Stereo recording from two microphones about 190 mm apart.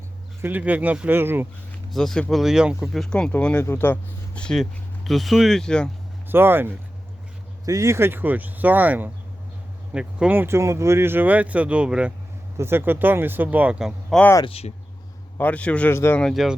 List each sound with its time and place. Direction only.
0.4 s speech: 10° right (ahead or behind)
1.9 s speech: centre (ahead or behind)
6.2 s speech: 10° right (ahead or behind)
14.4 s speech: 30° left (ahead or behind)
15.4 s speech: 5° left (ahead or behind)